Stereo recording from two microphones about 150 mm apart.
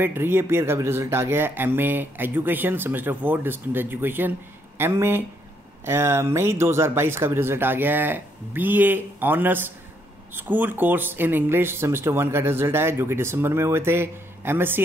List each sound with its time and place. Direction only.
0.0 s speech: 15° right (ahead or behind)